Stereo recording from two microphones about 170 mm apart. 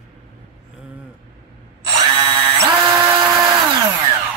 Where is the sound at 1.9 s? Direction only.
30° right (ahead or behind).